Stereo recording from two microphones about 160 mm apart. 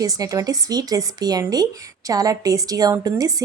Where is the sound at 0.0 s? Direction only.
20° right (ahead or behind).